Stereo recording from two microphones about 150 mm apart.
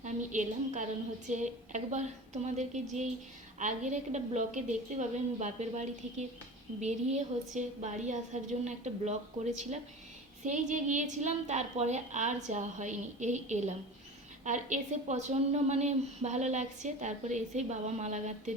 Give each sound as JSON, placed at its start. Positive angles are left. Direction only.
{"t": 0.0, "sound": "a woman's voice", "side_deg": -55}